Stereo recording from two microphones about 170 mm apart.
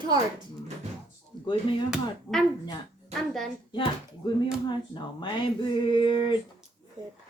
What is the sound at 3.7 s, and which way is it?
Speech, 30° left (ahead or behind).